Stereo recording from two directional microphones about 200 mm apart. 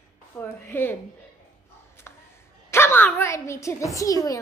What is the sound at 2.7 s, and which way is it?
A woman's voice, 10° left (ahead or behind).